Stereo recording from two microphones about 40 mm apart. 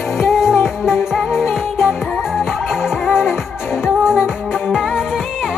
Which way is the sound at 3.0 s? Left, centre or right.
Left.